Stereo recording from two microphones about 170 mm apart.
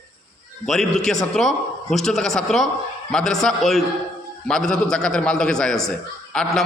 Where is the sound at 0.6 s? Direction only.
5° left (ahead or behind).